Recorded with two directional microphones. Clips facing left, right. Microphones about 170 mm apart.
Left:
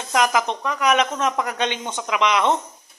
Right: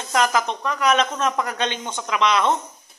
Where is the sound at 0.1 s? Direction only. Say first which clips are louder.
Left 1 dB; 15° left (ahead or behind).